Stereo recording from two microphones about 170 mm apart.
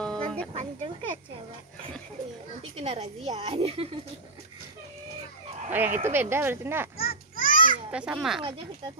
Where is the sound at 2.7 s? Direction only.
40° right (ahead or behind).